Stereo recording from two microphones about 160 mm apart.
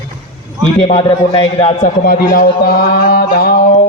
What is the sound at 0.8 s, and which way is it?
Speech, 35° left (ahead or behind).